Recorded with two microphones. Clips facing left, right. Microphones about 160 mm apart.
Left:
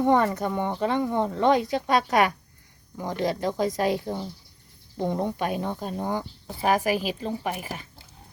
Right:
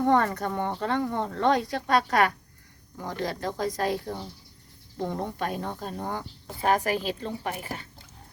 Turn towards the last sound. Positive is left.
turn(degrees=15)  # may be behind; listen again after turning